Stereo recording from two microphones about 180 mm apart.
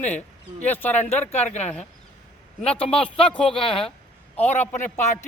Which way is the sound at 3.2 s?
5° left (ahead or behind).